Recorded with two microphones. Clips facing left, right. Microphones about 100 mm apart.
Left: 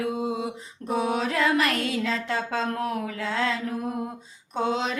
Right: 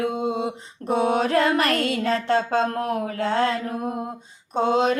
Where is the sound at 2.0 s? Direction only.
40° right (ahead or behind).